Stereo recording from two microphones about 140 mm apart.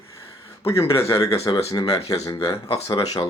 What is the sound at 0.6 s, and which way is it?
Speech, 20° left (ahead or behind).